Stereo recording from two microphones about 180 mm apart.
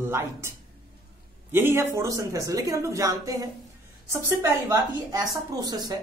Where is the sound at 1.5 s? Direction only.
15° right (ahead or behind).